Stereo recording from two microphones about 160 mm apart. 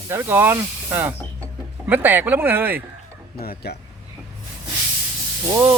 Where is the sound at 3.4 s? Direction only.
75° left (ahead or behind).